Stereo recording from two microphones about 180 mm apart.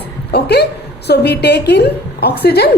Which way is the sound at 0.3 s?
65° left (ahead or behind).